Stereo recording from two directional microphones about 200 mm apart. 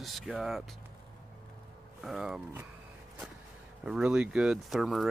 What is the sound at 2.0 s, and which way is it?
Speech, centre (ahead or behind).